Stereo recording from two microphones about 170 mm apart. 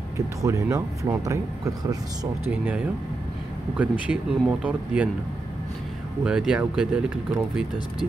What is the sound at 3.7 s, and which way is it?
Speech, 10° right (ahead or behind).